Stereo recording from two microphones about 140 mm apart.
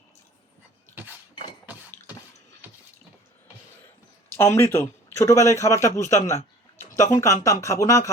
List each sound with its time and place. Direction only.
4.4 s a man's voice: 20° left (ahead or behind)